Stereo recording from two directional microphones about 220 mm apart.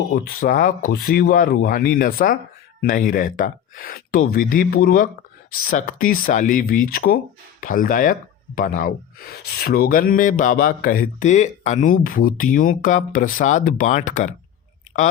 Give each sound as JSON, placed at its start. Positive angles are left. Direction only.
{"t": 0.1, "sound": "speech", "side_deg": 40}